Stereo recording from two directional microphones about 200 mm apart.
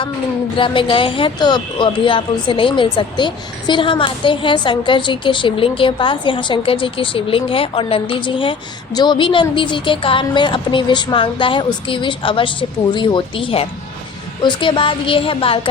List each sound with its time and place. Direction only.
0.5 s speech: 25° left (ahead or behind)